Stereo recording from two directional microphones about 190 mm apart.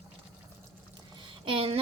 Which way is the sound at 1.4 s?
30° right (ahead or behind).